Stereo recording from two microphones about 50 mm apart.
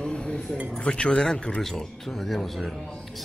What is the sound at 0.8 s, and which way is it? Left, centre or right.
Speech, left.